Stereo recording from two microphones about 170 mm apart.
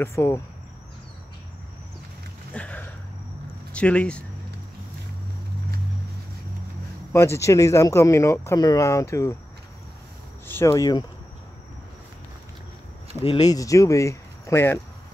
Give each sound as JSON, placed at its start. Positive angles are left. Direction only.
{"t": 0.0, "sound": "speech", "side_deg": 15}
{"t": 2.5, "sound": "a sound", "side_deg": 10}
{"t": 3.7, "sound": "speech", "side_deg": 5}
{"t": 7.1, "sound": "speech", "side_deg": 15}
{"t": 10.4, "sound": "speech", "side_deg": 15}
{"t": 13.2, "sound": "speech", "side_deg": 25}